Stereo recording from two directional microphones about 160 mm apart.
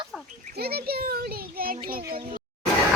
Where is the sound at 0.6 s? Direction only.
75° right (ahead or behind).